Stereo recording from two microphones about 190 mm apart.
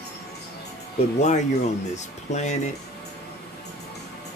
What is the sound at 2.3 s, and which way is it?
Speech, 35° left (ahead or behind).